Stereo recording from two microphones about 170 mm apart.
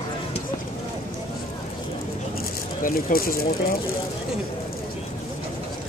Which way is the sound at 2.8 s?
55° left (ahead or behind).